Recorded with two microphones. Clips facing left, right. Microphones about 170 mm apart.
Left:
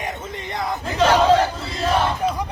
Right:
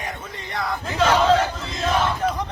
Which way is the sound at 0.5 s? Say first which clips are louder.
Left 1 dB; 20° left (ahead or behind).